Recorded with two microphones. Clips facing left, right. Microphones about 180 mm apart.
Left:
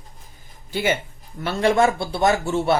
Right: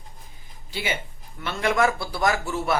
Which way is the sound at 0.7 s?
50° left (ahead or behind).